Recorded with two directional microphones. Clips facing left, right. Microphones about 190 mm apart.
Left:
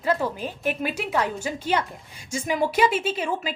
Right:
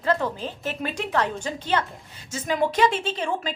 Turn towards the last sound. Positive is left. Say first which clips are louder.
# left 1 dB
turn(degrees=10)  # may be behind; listen again after turning